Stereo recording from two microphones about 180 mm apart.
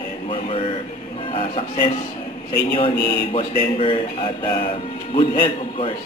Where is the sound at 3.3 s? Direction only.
30° left (ahead or behind).